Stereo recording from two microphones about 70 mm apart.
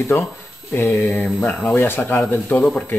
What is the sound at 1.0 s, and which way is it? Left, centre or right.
Speech, left.